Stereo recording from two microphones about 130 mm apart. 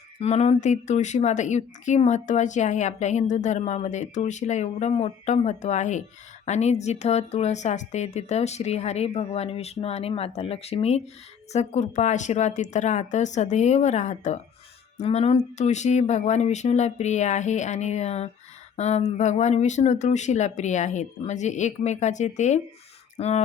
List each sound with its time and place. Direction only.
0.2 s a woman's voice: 55° left (ahead or behind)
14.9 s a woman's voice: 55° left (ahead or behind)